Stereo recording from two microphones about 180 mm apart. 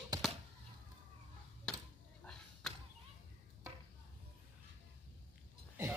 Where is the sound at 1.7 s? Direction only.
5° left (ahead or behind).